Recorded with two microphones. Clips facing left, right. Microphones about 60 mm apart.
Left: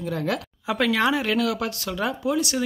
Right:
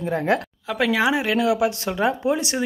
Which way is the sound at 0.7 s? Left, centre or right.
Centre.